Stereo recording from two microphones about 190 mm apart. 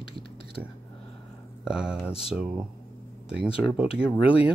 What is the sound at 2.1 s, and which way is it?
Speech, 30° left (ahead or behind).